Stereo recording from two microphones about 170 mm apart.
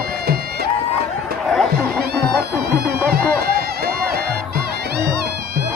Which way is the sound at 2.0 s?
65° right (ahead or behind).